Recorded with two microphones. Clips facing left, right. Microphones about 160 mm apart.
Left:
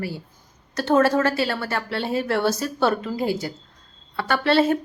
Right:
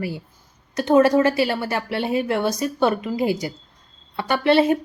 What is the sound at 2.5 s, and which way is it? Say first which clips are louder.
Speech: right 2 dB; 10° right (ahead or behind).